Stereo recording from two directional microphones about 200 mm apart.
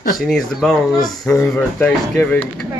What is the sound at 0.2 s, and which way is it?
Speech, centre (ahead or behind).